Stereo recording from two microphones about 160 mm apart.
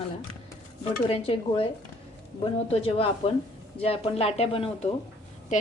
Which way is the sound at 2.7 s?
35° left (ahead or behind).